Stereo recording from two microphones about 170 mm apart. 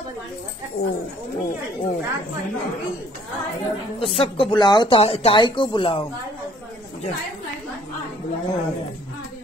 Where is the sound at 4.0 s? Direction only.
35° left (ahead or behind).